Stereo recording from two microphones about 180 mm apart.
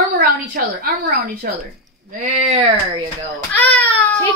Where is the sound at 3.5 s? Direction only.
10° left (ahead or behind).